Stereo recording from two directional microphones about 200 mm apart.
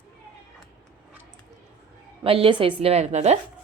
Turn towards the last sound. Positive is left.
turn(degrees=-35)  # may be behind; listen again after turning